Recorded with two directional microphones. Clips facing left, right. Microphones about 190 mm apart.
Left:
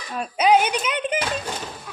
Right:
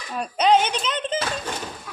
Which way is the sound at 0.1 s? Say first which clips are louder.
Left 1 dB; 5° left (ahead or behind).